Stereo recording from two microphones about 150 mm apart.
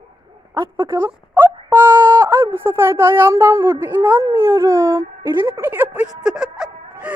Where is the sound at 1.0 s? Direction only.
15° right (ahead or behind).